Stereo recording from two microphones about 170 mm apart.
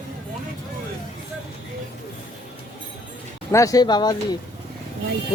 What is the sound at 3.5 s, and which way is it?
Speech, 20° left (ahead or behind).